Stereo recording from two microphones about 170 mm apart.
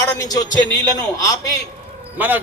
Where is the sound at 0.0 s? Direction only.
20° left (ahead or behind).